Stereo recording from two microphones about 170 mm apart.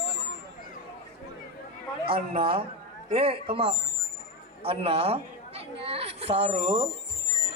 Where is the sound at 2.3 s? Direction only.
35° right (ahead or behind).